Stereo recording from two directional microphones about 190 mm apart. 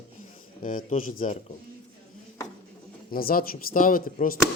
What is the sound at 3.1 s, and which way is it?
Speech, 50° left (ahead or behind).